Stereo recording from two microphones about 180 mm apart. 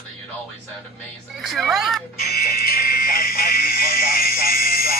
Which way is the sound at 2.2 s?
55° left (ahead or behind).